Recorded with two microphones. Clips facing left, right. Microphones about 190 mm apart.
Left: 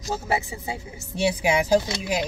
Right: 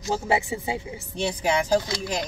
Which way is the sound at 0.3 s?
20° right (ahead or behind).